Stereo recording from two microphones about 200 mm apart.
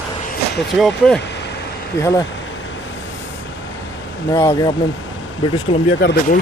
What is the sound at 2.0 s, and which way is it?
Speech, 15° left (ahead or behind).